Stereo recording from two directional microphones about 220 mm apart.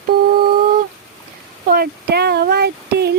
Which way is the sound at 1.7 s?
45° right (ahead or behind).